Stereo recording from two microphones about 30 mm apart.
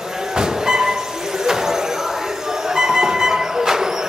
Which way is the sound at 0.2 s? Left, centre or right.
Centre.